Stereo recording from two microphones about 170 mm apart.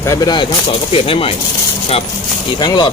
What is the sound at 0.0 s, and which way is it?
Speech, 15° left (ahead or behind).